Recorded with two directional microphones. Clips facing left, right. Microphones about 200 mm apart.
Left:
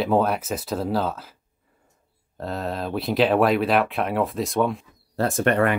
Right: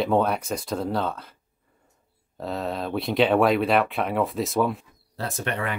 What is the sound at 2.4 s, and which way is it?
Speech, centre (ahead or behind).